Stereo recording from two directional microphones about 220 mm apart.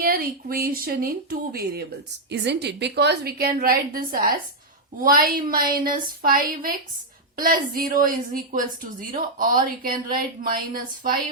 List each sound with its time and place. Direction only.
0.0 s a woman's voice: 45° right (ahead or behind)